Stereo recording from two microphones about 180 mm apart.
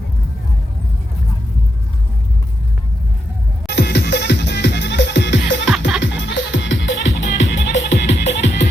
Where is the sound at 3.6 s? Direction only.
70° left (ahead or behind).